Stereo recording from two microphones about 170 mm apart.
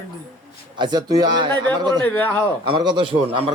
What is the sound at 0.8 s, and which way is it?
Speech, 25° right (ahead or behind).